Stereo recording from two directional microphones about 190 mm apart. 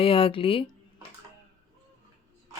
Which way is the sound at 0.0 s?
30° left (ahead or behind).